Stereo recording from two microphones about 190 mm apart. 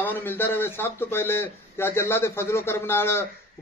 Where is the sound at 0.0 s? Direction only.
10° left (ahead or behind).